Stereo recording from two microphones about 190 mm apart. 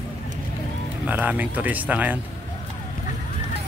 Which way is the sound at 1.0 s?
10° right (ahead or behind).